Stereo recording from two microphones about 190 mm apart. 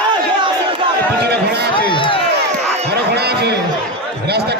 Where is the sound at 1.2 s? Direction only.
60° right (ahead or behind).